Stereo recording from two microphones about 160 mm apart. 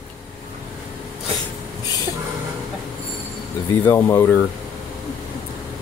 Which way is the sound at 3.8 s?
15° left (ahead or behind).